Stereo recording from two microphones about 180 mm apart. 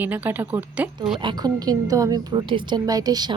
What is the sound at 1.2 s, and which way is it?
A woman's voice, 20° right (ahead or behind).